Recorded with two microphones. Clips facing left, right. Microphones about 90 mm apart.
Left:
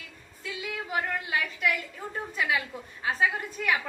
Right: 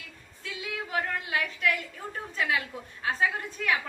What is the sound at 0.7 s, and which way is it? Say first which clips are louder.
Speech: even; centre (ahead or behind).